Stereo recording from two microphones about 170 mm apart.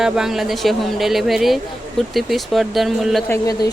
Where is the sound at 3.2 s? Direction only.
20° left (ahead or behind).